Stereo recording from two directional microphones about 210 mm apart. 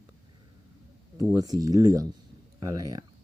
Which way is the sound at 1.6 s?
15° right (ahead or behind).